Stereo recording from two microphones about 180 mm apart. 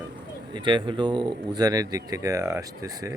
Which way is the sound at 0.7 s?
25° right (ahead or behind).